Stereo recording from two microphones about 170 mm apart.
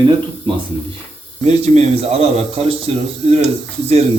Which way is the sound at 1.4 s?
40° right (ahead or behind).